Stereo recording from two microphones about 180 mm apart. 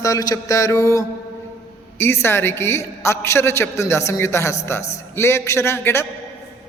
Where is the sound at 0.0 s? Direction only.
20° left (ahead or behind).